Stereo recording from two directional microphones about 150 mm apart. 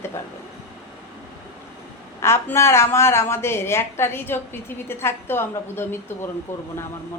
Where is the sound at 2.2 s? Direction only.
15° left (ahead or behind).